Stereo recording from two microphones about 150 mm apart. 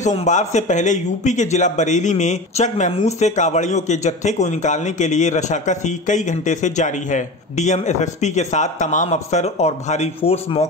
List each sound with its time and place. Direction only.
0.0 s a man's voice: 50° left (ahead or behind)